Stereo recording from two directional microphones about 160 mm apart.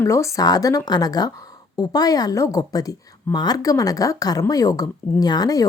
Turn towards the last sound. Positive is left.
turn(degrees=25)  # may be behind; listen again after turning